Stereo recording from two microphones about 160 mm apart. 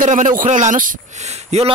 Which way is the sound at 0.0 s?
50° right (ahead or behind).